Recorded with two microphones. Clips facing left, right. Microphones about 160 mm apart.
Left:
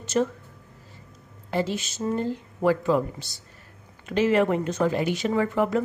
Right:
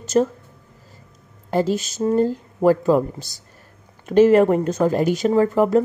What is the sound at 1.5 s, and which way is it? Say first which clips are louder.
A woman's voice: right 6 dB; 40° right (ahead or behind).